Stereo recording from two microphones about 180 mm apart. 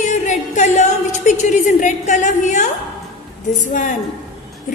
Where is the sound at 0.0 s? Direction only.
40° left (ahead or behind).